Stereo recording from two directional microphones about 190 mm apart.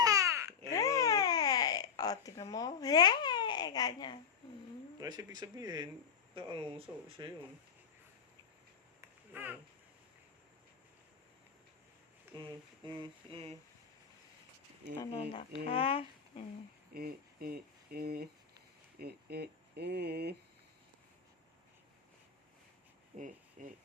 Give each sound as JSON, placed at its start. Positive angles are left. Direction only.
{"t": 0.0, "sound": "babbling", "side_deg": -15}
{"t": 0.7, "sound": "babbling", "side_deg": 15}
{"t": 4.9, "sound": "speech", "side_deg": -20}
{"t": 9.0, "sound": "a sound", "side_deg": -10}
{"t": 12.4, "sound": "speech", "side_deg": -25}
{"t": 15.1, "sound": "speech", "side_deg": 30}
{"t": 16.9, "sound": "speech", "side_deg": -50}
{"t": 23.1, "sound": "speech", "side_deg": -45}